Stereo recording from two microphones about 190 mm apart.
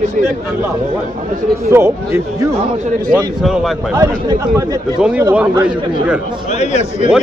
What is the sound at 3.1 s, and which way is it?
Speech, centre (ahead or behind).